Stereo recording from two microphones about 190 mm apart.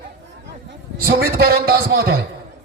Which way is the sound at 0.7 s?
55° right (ahead or behind).